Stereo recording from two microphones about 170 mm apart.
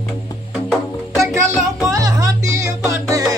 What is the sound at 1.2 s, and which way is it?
Music, 15° right (ahead or behind).